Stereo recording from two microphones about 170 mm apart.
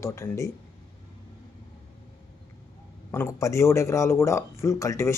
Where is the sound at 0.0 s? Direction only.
15° left (ahead or behind).